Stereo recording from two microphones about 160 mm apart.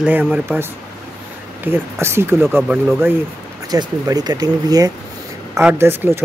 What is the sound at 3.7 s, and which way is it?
Speech, 25° right (ahead or behind).